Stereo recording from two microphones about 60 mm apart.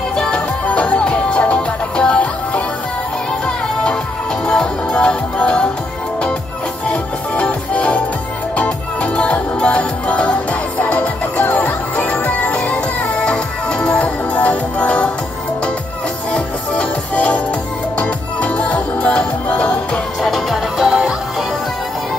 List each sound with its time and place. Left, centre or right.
0.1 s music: centre
6.9 s music: left
16.3 s music: centre
20.2 s music: centre